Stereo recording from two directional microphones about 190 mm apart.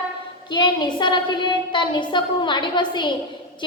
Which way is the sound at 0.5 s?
25° left (ahead or behind).